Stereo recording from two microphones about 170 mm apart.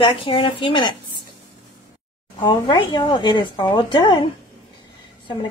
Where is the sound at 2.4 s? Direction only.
25° left (ahead or behind).